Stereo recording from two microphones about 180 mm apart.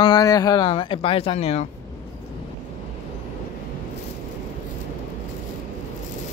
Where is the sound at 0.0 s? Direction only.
20° left (ahead or behind); by 1.7 s 35° left (ahead or behind).